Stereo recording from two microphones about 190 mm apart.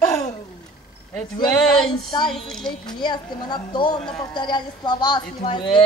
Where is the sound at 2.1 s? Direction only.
25° left (ahead or behind).